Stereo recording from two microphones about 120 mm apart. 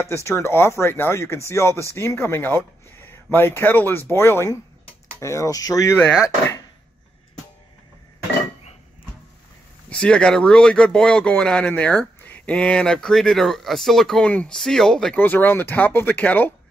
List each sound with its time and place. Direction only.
0.0 s speech: 20° left (ahead or behind)
9.8 s speech: 10° left (ahead or behind)
15.1 s speech: 15° left (ahead or behind)